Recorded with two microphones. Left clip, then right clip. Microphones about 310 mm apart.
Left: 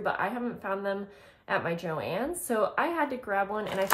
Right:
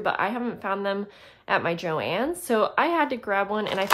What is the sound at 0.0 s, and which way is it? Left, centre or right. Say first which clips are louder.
Speech: right 4 dB; centre.